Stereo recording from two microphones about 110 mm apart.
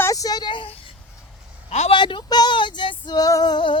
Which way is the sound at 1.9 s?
50° left (ahead or behind).